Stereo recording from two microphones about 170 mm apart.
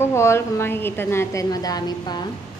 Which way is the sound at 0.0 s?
15° left (ahead or behind).